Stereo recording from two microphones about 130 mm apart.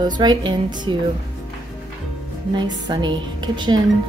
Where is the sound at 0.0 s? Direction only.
35° right (ahead or behind).